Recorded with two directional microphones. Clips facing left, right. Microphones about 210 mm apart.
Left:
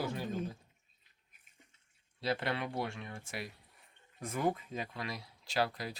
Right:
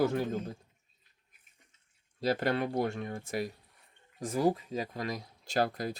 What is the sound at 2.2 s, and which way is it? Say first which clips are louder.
Speech: right 6 dB; 40° right (ahead or behind).